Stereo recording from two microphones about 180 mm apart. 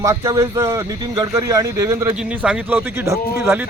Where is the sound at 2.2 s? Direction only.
5° right (ahead or behind).